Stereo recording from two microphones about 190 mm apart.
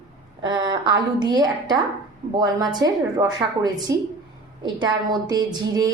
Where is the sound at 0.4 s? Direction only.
25° right (ahead or behind).